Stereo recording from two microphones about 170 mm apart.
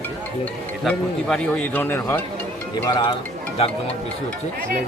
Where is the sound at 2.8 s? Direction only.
25° left (ahead or behind).